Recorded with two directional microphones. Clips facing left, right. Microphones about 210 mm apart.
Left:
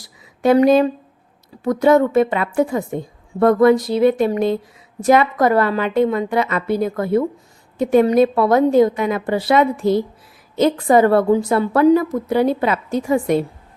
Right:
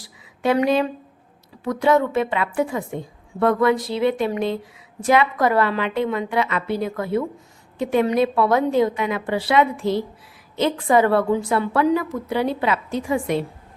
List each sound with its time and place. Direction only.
0.4 s a woman's voice: 40° left (ahead or behind)